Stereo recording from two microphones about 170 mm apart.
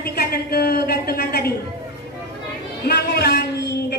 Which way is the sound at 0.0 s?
65° left (ahead or behind).